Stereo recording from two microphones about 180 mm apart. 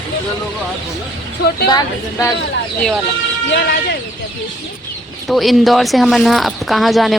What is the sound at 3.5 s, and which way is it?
Speech, 65° left (ahead or behind).